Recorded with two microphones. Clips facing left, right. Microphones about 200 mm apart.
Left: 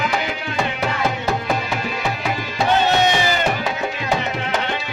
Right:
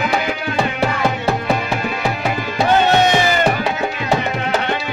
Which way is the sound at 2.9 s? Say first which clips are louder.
Right 3 dB; 55° right (ahead or behind).